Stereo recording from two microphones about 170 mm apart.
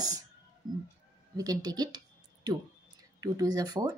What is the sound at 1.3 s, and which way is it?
Speech, 20° right (ahead or behind).